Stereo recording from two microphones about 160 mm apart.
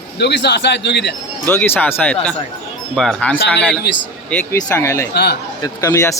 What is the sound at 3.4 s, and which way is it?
Speech, 90° left.